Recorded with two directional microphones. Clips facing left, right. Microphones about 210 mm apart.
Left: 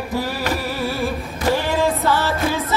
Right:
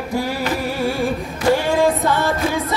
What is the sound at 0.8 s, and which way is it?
Music, 15° right (ahead or behind).